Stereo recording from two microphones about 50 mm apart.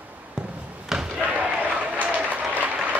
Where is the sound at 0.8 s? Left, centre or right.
Centre.